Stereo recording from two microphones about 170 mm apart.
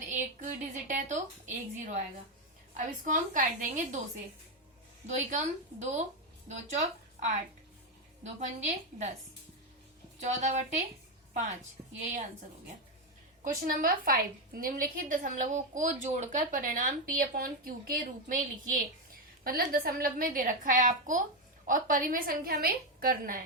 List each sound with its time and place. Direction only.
0.1 s a woman's voice: 45° right (ahead or behind)
5.0 s a woman's voice: 45° right (ahead or behind)
10.2 s a woman's voice: 45° right (ahead or behind)
13.4 s a woman's voice: 55° right (ahead or behind)